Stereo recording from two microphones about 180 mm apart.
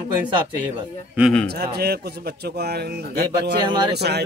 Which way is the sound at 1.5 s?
60° right (ahead or behind).